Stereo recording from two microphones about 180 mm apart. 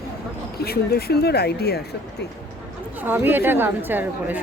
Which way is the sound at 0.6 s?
60° left (ahead or behind).